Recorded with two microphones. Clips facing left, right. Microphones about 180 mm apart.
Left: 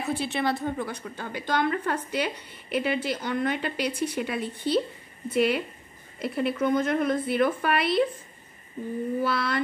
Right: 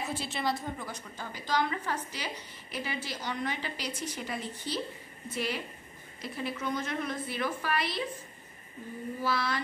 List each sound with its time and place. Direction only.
0.1 s a woman's voice: 60° left (ahead or behind)
9.2 s a woman's voice: 60° left (ahead or behind)